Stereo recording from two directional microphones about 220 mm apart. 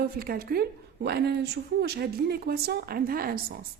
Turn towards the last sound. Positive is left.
turn(degrees=-40)  # may be behind; listen again after turning